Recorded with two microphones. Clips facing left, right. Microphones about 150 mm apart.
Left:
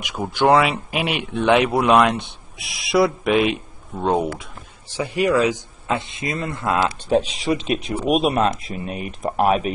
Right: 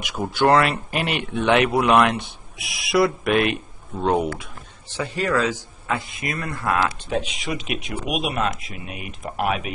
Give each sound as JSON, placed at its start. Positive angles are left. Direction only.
{"t": 0.0, "sound": "speech", "side_deg": 0}
{"t": 2.6, "sound": "speech", "side_deg": 0}
{"t": 4.9, "sound": "speech", "side_deg": 15}
{"t": 7.1, "sound": "speech", "side_deg": 35}